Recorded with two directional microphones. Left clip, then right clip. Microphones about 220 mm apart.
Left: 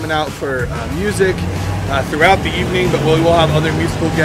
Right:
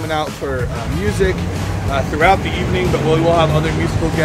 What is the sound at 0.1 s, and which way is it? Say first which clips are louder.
Speech: left 2 dB; 15° left (ahead or behind).